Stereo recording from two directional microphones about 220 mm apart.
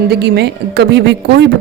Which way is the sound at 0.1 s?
50° right (ahead or behind).